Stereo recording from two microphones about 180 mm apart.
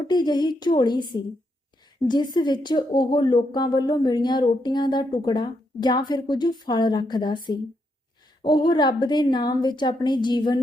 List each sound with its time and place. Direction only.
0.1 s speech: 25° left (ahead or behind)